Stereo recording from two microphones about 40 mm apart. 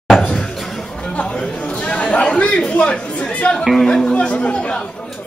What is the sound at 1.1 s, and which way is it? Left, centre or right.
Speech, left.